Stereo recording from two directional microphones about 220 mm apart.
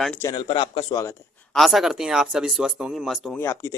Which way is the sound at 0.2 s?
20° left (ahead or behind).